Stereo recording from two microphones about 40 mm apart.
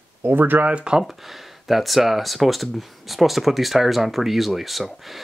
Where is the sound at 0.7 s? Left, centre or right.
Right.